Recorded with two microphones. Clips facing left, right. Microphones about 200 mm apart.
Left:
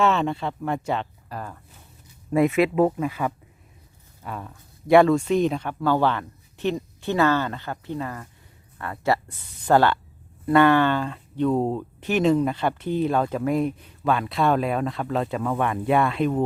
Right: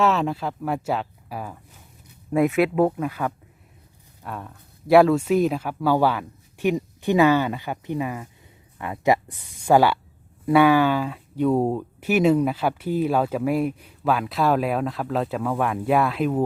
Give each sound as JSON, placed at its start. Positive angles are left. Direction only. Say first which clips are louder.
{"t": 0.0, "sound": "speech", "louder": "even", "side_deg": 0}